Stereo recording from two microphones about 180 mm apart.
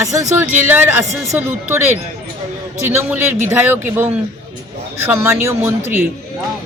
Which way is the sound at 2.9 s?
10° right (ahead or behind).